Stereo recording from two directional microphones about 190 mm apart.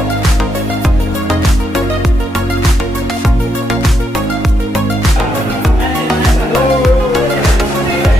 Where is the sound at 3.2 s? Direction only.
Centre (ahead or behind).